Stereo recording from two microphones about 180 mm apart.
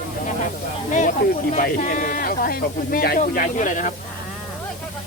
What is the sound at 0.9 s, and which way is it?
Speech, 45° left (ahead or behind).